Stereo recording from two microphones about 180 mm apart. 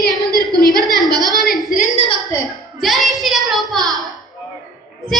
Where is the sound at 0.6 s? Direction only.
20° right (ahead or behind).